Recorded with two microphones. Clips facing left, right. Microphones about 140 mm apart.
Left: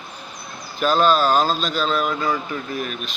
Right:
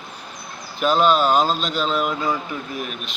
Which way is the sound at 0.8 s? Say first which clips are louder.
Even; 20° right (ahead or behind).